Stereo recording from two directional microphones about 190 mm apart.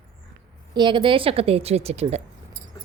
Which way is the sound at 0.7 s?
25° right (ahead or behind).